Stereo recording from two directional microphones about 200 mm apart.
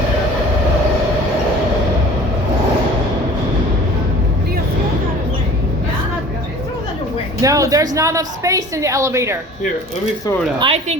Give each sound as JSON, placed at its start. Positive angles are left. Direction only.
{"t": 7.4, "sound": "a woman's voice", "side_deg": -15}
{"t": 10.6, "sound": "speech", "side_deg": -30}